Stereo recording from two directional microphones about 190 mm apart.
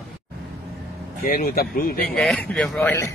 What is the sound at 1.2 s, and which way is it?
Speech, 50° left (ahead or behind).